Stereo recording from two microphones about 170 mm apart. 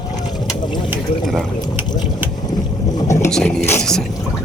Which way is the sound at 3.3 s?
5° left (ahead or behind).